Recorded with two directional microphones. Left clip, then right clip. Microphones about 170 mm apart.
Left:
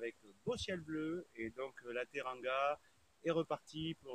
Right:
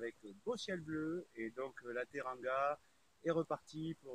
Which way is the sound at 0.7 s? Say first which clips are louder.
Even; 10° left (ahead or behind).